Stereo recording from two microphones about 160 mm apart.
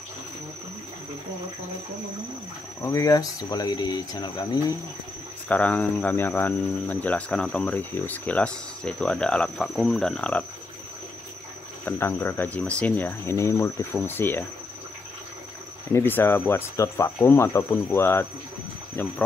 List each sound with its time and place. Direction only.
2.8 s speech: 20° left (ahead or behind)
5.5 s speech: 10° left (ahead or behind)
11.8 s speech: 15° left (ahead or behind)
15.9 s speech: 15° left (ahead or behind)